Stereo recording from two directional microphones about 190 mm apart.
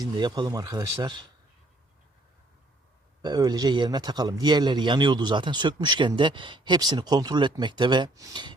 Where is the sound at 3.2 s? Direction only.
20° right (ahead or behind).